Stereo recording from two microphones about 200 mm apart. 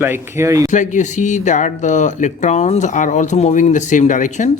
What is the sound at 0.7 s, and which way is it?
Speech, 40° left (ahead or behind).